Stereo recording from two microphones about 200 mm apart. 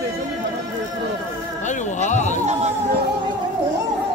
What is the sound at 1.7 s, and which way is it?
Speech, 35° left (ahead or behind).